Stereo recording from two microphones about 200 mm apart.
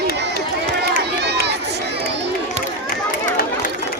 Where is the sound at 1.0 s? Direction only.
55° right (ahead or behind).